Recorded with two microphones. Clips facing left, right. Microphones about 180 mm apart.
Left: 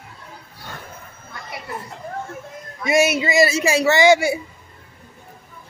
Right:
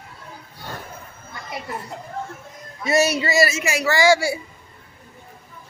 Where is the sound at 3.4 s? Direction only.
30° left (ahead or behind).